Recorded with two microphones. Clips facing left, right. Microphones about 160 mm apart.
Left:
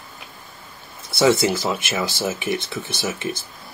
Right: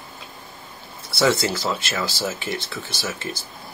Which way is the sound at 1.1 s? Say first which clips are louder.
Left 3 dB; 20° left (ahead or behind).